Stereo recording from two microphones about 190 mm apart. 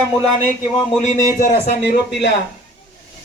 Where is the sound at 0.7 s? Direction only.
25° left (ahead or behind).